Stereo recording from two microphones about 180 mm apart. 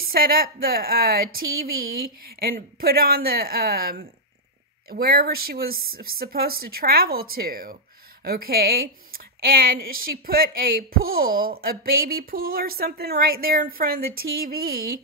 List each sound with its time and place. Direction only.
0.0 s a woman's voice: 55° right (ahead or behind)